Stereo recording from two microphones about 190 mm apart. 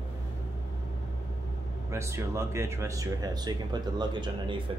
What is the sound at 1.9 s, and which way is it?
Speech, 15° right (ahead or behind).